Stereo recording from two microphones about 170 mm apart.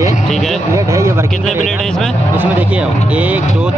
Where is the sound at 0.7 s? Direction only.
15° right (ahead or behind).